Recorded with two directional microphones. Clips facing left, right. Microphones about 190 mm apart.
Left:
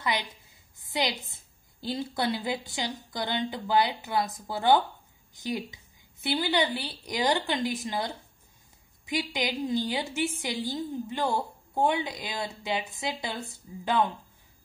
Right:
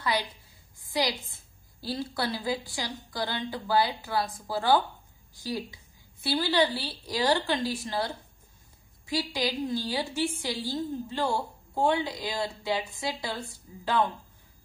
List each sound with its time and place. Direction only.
0.0 s a woman's voice: 20° left (ahead or behind)